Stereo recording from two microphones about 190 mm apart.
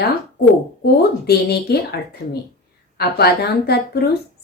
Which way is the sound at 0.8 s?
55° left (ahead or behind).